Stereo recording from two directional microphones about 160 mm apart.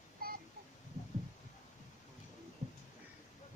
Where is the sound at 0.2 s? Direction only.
65° right (ahead or behind).